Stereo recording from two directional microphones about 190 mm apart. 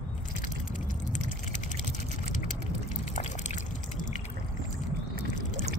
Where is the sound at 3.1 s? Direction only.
40° left (ahead or behind).